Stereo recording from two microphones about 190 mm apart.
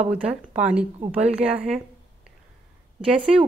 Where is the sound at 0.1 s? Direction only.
5° right (ahead or behind).